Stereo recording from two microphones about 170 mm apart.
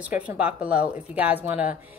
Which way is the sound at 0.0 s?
10° right (ahead or behind).